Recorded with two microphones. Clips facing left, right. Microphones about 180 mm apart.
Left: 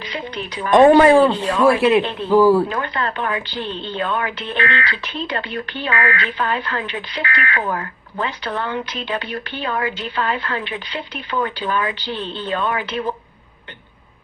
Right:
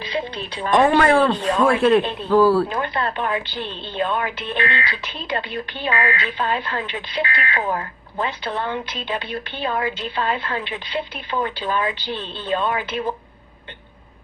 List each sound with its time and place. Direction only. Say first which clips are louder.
0.8 s speech: left 6 dB; 20° left (ahead or behind)
2.8 s speech: even; 20° right (ahead or behind)